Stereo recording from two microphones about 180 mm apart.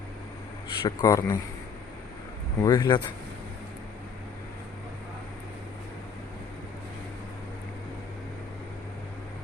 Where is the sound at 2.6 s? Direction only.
20° left (ahead or behind).